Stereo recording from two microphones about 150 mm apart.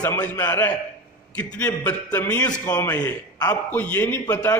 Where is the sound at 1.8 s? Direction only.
10° left (ahead or behind).